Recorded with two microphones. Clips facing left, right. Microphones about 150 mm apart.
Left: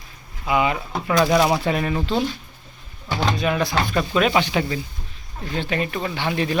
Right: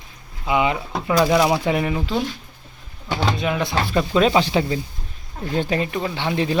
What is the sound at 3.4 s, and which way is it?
Speech, 20° right (ahead or behind).